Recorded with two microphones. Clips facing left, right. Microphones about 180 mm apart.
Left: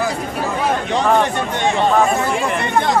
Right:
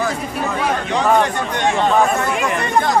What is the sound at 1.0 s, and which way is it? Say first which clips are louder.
Speech: right 1 dB; 10° right (ahead or behind).